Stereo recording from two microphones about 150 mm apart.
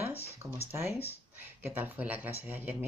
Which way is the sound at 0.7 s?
15° right (ahead or behind).